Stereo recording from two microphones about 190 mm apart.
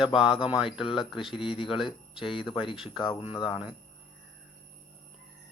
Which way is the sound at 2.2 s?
25° left (ahead or behind).